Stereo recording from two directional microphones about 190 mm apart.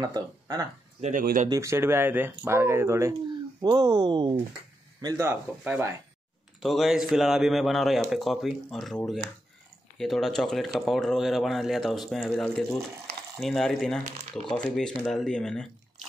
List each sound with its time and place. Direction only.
0.0 s speech: 20° right (ahead or behind)
1.0 s speech: 45° right (ahead or behind)
1.5 s speech: 15° right (ahead or behind)
6.6 s speech: centre (ahead or behind)